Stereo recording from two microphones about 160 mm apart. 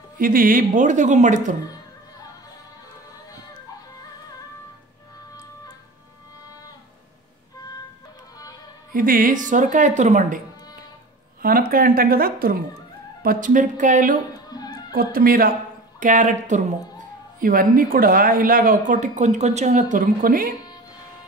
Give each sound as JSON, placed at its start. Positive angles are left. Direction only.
{"t": 0.2, "sound": "a woman's voice", "side_deg": -60}
{"t": 8.9, "sound": "a woman's voice", "side_deg": -60}
{"t": 11.4, "sound": "speech", "side_deg": -65}
{"t": 14.5, "sound": "music", "side_deg": 25}
{"t": 14.9, "sound": "speech", "side_deg": -65}
{"t": 16.0, "sound": "a woman's voice", "side_deg": -50}
{"t": 17.4, "sound": "speech", "side_deg": -60}